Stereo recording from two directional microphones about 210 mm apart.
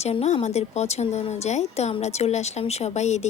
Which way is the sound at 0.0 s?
30° left (ahead or behind).